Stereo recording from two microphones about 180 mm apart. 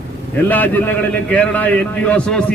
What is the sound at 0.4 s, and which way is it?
A man's voice, 10° left (ahead or behind).